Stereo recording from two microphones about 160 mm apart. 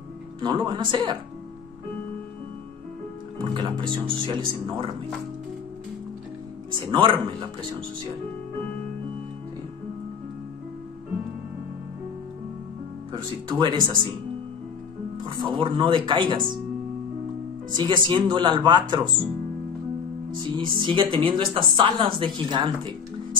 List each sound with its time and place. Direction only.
0.4 s speech: 30° right (ahead or behind)
3.3 s speech: 30° right (ahead or behind)
6.7 s speech: 30° right (ahead or behind)
13.1 s speech: 30° right (ahead or behind)
15.2 s speech: 30° right (ahead or behind)
17.7 s speech: 30° right (ahead or behind)
20.3 s speech: 30° right (ahead or behind)